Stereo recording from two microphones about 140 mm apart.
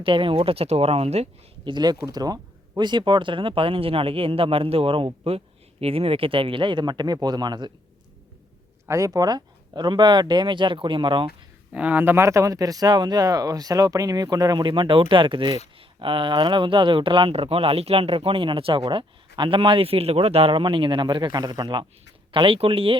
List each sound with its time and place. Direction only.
0.0 s speech: 40° right (ahead or behind)
1.6 s speech: 30° right (ahead or behind)
8.9 s speech: 25° right (ahead or behind)
11.7 s speech: 10° right (ahead or behind); by 23.0 s 40° right (ahead or behind)